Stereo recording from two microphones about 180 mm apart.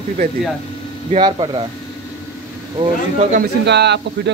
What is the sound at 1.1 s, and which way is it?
Speech, 25° right (ahead or behind).